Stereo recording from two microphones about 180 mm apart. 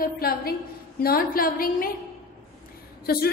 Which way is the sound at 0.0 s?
55° left (ahead or behind).